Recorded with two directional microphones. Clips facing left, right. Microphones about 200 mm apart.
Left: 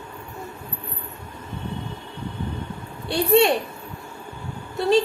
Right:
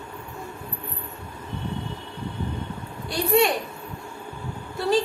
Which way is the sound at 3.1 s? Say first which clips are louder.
Left 3 dB; 30° left (ahead or behind).